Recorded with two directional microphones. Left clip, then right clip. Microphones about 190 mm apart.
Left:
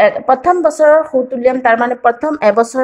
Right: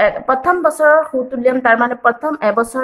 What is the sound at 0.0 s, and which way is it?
A woman's voice, 15° left (ahead or behind).